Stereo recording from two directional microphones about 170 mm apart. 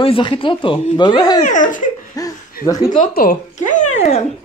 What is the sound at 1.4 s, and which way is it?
Speech, 50° left (ahead or behind).